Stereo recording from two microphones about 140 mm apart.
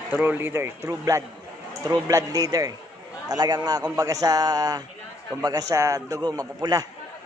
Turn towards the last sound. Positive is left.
turn(degrees=-25)  # may be behind; listen again after turning